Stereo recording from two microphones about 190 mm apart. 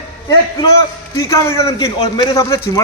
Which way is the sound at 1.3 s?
15° left (ahead or behind).